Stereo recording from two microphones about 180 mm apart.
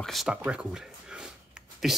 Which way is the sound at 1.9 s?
Centre (ahead or behind).